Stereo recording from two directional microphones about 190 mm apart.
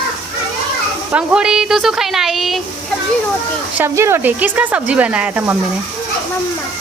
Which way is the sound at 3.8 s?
15° right (ahead or behind).